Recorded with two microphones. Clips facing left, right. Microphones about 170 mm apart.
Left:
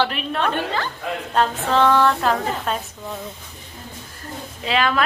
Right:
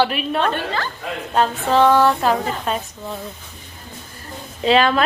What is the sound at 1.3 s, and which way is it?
A woman's voice, 10° right (ahead or behind).